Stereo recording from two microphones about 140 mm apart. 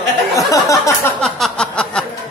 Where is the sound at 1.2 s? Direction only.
5° left (ahead or behind).